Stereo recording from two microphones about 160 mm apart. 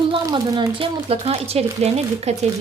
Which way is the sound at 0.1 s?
25° right (ahead or behind).